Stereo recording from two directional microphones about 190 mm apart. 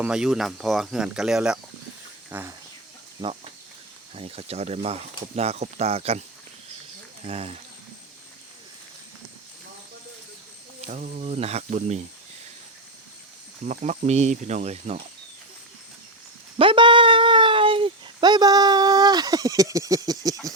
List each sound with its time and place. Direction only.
0.0 s speech: 5° right (ahead or behind)
3.2 s speech: 30° right (ahead or behind)
7.3 s speech: 30° right (ahead or behind)
10.8 s speech: 40° right (ahead or behind)
13.7 s speech: 40° right (ahead or behind)
16.6 s a sound: 25° right (ahead or behind)